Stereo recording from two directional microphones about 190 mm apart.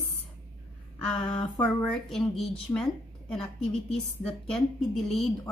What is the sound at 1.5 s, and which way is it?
A woman's voice, centre (ahead or behind).